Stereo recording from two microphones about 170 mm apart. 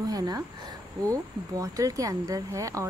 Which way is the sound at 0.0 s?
20° right (ahead or behind).